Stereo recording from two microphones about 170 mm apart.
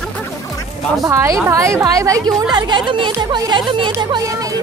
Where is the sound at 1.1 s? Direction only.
15° right (ahead or behind).